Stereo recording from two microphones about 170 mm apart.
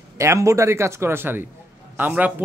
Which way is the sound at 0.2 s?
15° right (ahead or behind).